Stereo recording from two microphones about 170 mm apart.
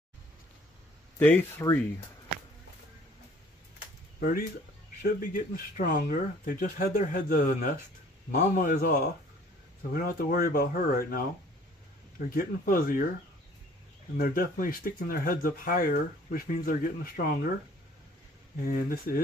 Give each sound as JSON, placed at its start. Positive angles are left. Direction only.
{"t": 1.2, "sound": "speech", "side_deg": 15}
{"t": 4.2, "sound": "speech", "side_deg": 55}
{"t": 12.4, "sound": "speech", "side_deg": 55}
{"t": 14.1, "sound": "speech", "side_deg": 55}
{"t": 18.7, "sound": "speech", "side_deg": 60}